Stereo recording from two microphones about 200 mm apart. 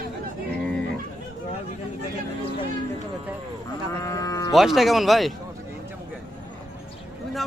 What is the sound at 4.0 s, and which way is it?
Sheep, 15° left (ahead or behind).